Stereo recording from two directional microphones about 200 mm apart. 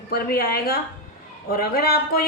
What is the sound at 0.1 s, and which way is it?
Speech, 50° left (ahead or behind).